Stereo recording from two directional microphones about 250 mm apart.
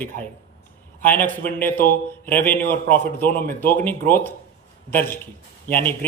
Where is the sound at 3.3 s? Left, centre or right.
Left.